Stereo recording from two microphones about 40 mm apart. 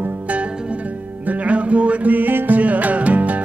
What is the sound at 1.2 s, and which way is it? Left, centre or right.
Music, right.